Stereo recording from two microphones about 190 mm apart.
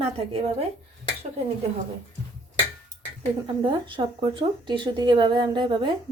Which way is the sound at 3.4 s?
25° right (ahead or behind).